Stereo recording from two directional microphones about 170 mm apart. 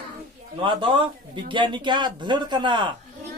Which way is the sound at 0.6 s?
30° right (ahead or behind).